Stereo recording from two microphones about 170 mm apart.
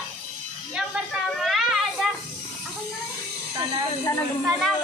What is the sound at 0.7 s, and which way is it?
Children playing, 5° right (ahead or behind).